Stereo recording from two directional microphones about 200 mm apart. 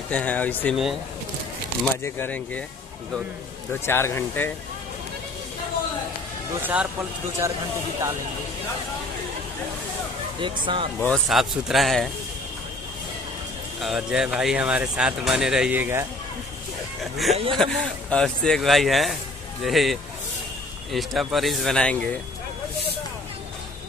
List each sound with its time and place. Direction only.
0.1 s speech: 5° left (ahead or behind)
2.0 s speech: 10° left (ahead or behind)
3.8 s speech: 10° left (ahead or behind)
6.6 s speech: 10° right (ahead or behind)
10.4 s speech: 25° right (ahead or behind)
11.0 s speech: 5° left (ahead or behind)
13.7 s speech: centre (ahead or behind)
17.0 s speech: centre (ahead or behind)